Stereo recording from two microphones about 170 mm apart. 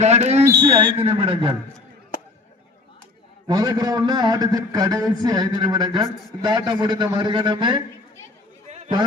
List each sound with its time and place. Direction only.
0.0 s a sound: 40° right (ahead or behind)
0.4 s speech: 20° right (ahead or behind)
3.4 s a man's voice: 25° right (ahead or behind)
8.6 s chatter: 40° right (ahead or behind)